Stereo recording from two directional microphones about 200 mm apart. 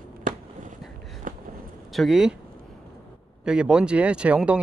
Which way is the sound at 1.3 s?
45° right (ahead or behind).